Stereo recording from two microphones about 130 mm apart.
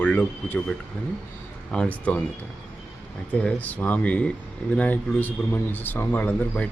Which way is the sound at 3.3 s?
10° left (ahead or behind).